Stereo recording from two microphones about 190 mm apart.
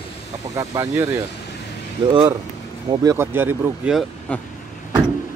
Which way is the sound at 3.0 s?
10° right (ahead or behind).